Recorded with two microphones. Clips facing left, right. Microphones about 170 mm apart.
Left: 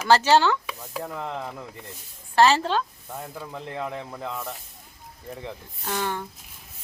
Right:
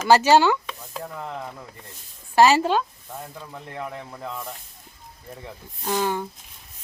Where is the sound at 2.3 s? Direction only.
10° right (ahead or behind).